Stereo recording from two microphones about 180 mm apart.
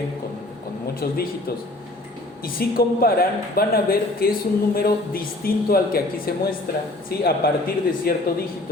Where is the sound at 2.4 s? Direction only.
55° left (ahead or behind).